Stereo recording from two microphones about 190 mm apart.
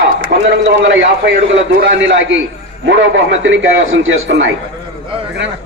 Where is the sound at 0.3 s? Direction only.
55° right (ahead or behind).